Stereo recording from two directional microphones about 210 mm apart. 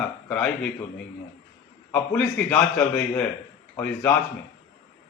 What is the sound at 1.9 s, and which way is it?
A man's voice, 5° left (ahead or behind).